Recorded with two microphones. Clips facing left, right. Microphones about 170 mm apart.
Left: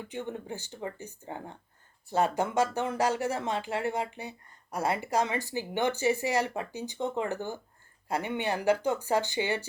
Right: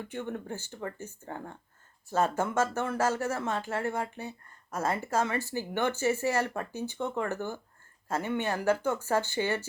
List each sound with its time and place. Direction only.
0.1 s speech: 15° left (ahead or behind)